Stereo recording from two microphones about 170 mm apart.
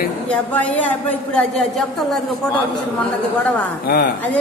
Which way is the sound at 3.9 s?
65° left (ahead or behind).